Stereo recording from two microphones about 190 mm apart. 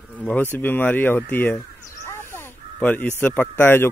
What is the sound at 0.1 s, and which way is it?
Speech, 5° left (ahead or behind).